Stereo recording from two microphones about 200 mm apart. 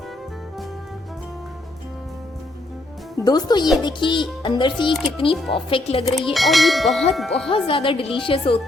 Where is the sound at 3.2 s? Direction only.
20° left (ahead or behind).